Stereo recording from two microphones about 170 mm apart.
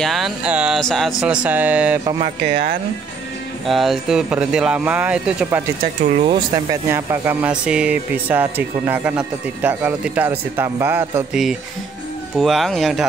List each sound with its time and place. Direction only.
0.0 s speech: centre (ahead or behind)
2.4 s speech: 60° right (ahead or behind)
3.6 s speech: centre (ahead or behind)
6.2 s speech: 25° right (ahead or behind)
6.9 s speech: 15° right (ahead or behind)
12.4 s speech: centre (ahead or behind)